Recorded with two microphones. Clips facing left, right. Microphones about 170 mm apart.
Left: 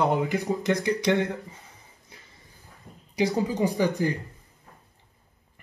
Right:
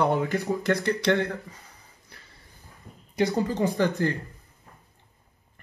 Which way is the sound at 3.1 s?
10° left (ahead or behind).